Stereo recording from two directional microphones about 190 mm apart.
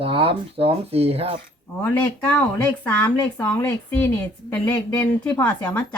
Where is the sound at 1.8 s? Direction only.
10° left (ahead or behind).